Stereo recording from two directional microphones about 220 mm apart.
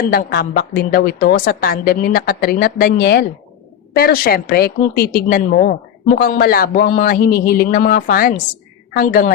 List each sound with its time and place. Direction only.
0.0 s a woman's voice: 45° left (ahead or behind)